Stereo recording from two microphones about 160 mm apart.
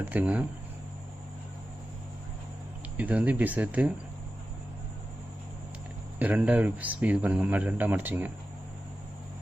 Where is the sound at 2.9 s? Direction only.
10° right (ahead or behind).